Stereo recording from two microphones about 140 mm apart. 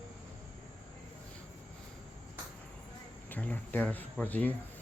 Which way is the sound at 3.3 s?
10° left (ahead or behind).